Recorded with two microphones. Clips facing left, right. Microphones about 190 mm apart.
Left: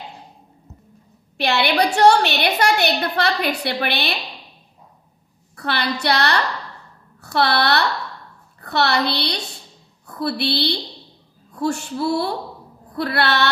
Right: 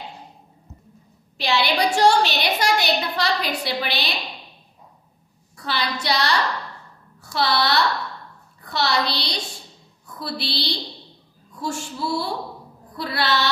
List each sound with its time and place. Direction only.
1.4 s a woman's voice: 60° left (ahead or behind)
5.6 s a woman's voice: 60° left (ahead or behind)